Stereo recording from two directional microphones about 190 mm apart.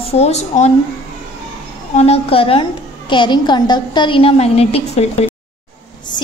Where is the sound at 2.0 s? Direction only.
30° left (ahead or behind).